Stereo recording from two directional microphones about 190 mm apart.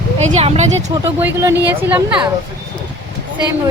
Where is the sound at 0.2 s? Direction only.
35° right (ahead or behind).